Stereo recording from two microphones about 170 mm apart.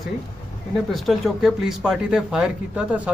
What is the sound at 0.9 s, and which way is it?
Speech, centre (ahead or behind).